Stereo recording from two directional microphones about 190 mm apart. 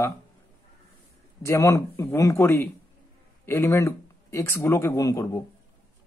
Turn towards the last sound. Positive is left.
turn(degrees=20)  # may be behind; listen again after turning